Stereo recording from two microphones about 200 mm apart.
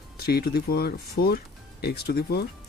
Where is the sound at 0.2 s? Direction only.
50° left (ahead or behind).